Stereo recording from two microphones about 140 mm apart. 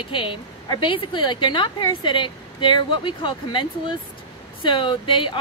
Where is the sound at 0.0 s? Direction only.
35° left (ahead or behind).